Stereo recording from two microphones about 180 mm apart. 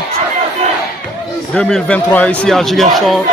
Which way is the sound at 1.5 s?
5° left (ahead or behind).